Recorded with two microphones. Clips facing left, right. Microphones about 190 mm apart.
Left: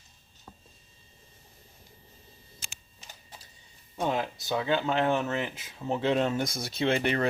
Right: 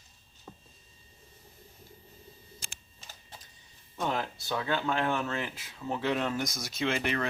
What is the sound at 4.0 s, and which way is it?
Speech, 15° left (ahead or behind).